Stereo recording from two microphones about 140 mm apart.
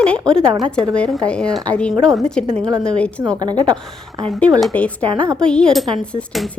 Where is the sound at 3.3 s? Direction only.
30° right (ahead or behind).